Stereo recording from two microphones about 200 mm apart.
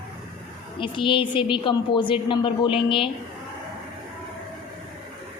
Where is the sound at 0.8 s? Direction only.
25° left (ahead or behind).